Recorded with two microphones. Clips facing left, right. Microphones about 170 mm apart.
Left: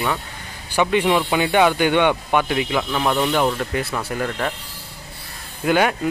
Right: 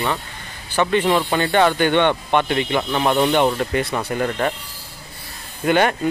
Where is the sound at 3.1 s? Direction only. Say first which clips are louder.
Right 3 dB; 20° right (ahead or behind).